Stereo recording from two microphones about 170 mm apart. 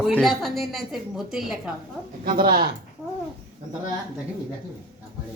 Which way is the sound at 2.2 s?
60° right (ahead or behind).